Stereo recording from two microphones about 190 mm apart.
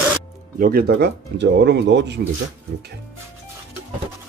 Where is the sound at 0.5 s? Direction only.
50° right (ahead or behind); by 2.2 s 65° right (ahead or behind).